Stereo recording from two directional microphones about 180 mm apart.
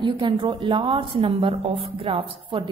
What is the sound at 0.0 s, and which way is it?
A woman's voice, 25° right (ahead or behind).